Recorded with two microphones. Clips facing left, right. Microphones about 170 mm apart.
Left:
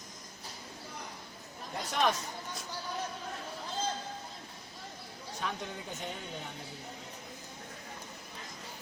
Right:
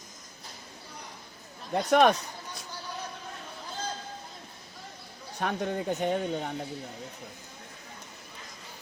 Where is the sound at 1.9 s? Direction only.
60° right (ahead or behind).